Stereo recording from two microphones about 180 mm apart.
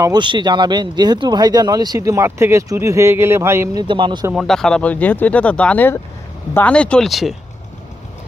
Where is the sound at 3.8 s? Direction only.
25° right (ahead or behind).